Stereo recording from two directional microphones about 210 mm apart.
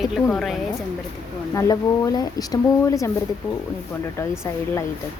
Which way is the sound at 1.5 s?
15° left (ahead or behind).